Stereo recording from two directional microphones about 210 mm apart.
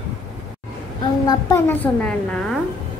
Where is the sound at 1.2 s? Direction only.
10° left (ahead or behind).